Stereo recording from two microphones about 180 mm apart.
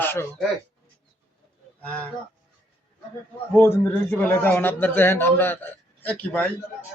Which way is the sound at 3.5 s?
10° left (ahead or behind).